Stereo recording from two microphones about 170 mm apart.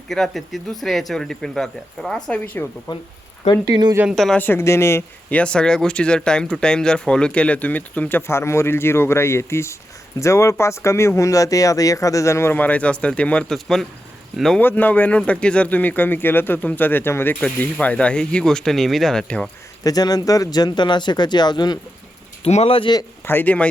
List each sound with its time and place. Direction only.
0.1 s speech: centre (ahead or behind)
2.9 s speech: 25° left (ahead or behind)
3.7 s speech: 25° right (ahead or behind)
4.1 s speech: 5° left (ahead or behind)
19.8 s speech: 20° left (ahead or behind)
22.4 s a man's voice: 35° left (ahead or behind)
23.2 s speech: 10° left (ahead or behind)